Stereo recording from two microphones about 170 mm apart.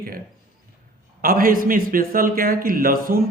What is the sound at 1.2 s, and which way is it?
A man's voice, 55° right (ahead or behind).